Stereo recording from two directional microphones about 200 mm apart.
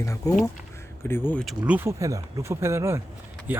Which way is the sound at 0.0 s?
15° left (ahead or behind).